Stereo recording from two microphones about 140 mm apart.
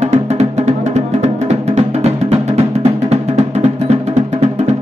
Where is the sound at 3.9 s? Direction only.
50° right (ahead or behind).